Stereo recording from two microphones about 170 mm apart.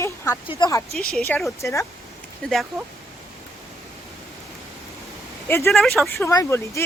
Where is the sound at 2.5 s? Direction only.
Centre (ahead or behind).